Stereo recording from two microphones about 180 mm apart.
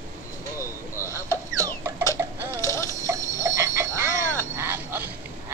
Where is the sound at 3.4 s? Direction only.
15° right (ahead or behind).